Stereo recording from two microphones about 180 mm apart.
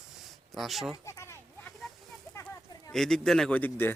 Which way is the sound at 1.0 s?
15° left (ahead or behind).